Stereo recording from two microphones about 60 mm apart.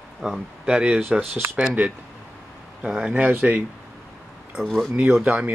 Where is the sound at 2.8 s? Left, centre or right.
Centre.